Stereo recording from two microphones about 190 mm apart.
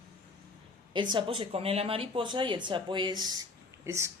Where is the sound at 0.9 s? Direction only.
25° right (ahead or behind).